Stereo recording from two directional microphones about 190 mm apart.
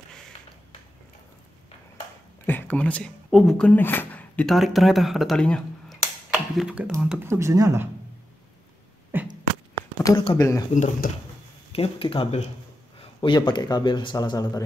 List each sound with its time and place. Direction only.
2.4 s speech: 10° left (ahead or behind); by 7.9 s 15° right (ahead or behind)
9.1 s a sound: 10° right (ahead or behind)
10.0 s speech: 20° left (ahead or behind)
10.7 s speech: 40° left (ahead or behind)
11.7 s speech: 30° left (ahead or behind)